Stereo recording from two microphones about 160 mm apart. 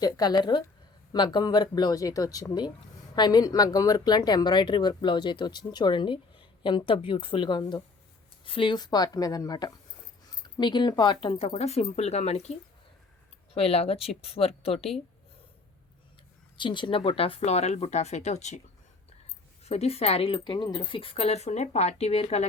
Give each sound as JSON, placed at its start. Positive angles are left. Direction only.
{"t": 0.0, "sound": "speech", "side_deg": 25}
{"t": 16.6, "sound": "speech", "side_deg": 30}
{"t": 19.6, "sound": "speech", "side_deg": 40}